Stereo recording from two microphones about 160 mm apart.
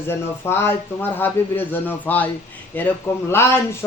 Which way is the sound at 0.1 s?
15° left (ahead or behind).